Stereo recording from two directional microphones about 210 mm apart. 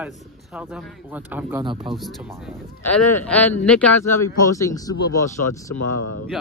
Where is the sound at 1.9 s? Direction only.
Centre (ahead or behind); by 4.9 s 15° left (ahead or behind).